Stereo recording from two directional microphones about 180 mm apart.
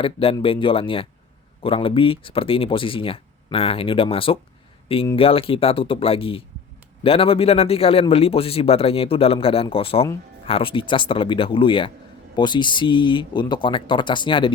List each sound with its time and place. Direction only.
0.0 s a man's voice: 30° left (ahead or behind)